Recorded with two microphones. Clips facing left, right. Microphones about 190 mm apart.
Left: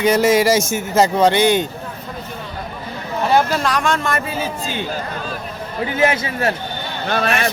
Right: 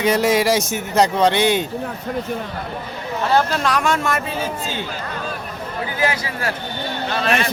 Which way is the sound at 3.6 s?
Centre (ahead or behind).